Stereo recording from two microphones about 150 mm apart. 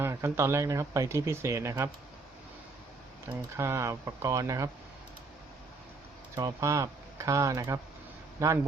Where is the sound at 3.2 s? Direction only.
20° right (ahead or behind).